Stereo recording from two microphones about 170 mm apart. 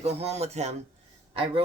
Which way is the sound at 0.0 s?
40° right (ahead or behind).